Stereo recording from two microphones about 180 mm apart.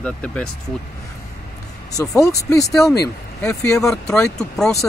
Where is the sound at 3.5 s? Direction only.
15° left (ahead or behind).